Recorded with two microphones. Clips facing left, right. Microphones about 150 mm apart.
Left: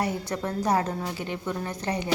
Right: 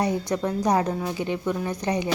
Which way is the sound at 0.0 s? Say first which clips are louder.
Right 4 dB; 15° right (ahead or behind).